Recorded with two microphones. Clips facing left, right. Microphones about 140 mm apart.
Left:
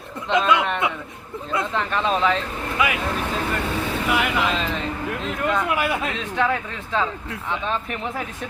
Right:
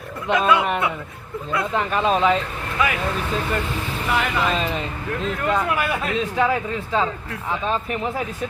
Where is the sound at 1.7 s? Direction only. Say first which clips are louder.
Right 4 dB; 10° right (ahead or behind).